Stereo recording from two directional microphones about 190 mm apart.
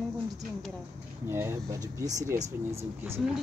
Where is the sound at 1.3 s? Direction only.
15° right (ahead or behind).